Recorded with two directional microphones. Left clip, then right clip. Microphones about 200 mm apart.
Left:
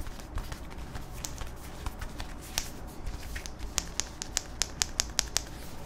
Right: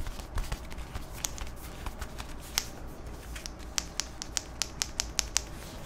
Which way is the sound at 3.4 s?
20° left (ahead or behind).